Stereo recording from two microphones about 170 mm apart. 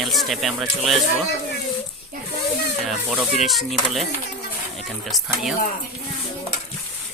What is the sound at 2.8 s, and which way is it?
Speech, 5° right (ahead or behind).